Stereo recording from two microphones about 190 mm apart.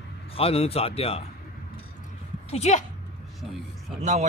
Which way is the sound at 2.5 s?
35° left (ahead or behind).